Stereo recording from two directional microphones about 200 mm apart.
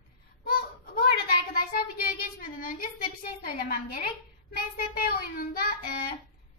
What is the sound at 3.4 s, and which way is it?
A woman's voice, 45° left (ahead or behind).